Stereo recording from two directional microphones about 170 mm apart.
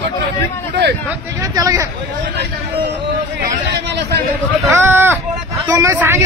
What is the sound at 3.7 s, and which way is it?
Chatter, 75° right (ahead or behind).